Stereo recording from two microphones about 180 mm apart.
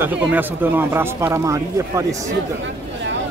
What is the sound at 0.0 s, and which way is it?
Speech, 10° right (ahead or behind).